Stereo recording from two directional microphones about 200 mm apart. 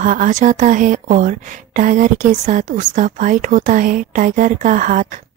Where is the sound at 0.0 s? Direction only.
40° right (ahead or behind).